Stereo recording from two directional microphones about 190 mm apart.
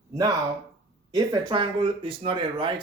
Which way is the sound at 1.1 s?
20° right (ahead or behind).